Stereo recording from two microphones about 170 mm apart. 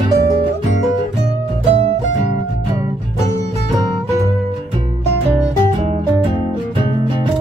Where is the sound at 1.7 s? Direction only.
35° right (ahead or behind).